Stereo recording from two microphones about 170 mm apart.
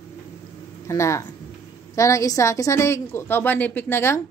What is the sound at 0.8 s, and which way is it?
A woman's voice, 15° left (ahead or behind).